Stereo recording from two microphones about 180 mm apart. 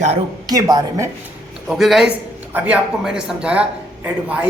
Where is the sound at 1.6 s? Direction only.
Centre (ahead or behind).